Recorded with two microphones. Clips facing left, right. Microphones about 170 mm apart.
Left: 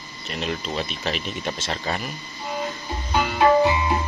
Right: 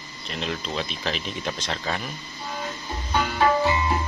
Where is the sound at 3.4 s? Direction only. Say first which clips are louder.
Left 4 dB; 15° left (ahead or behind).